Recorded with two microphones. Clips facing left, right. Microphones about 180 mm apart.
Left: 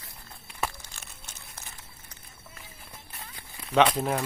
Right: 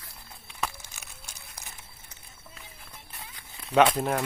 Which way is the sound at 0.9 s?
10° right (ahead or behind).